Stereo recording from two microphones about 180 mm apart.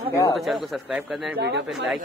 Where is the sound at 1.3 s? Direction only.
65° right (ahead or behind).